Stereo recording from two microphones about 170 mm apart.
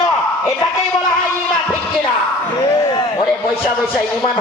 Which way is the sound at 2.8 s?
20° left (ahead or behind).